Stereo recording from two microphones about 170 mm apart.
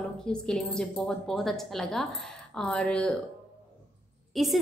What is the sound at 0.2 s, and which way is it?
A woman's voice, 5° left (ahead or behind).